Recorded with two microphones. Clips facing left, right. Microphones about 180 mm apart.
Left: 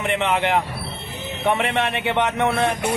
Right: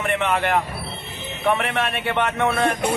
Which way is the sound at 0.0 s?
20° left (ahead or behind).